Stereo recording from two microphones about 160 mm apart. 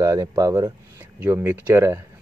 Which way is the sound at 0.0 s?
20° right (ahead or behind).